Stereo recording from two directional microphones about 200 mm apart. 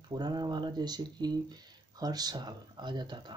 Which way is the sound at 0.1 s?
20° right (ahead or behind).